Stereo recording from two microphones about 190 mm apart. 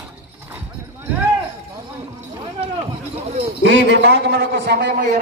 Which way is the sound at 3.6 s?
70° right (ahead or behind).